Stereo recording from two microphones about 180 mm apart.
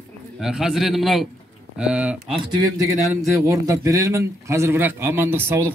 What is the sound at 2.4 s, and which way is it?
A man's voice, 20° right (ahead or behind).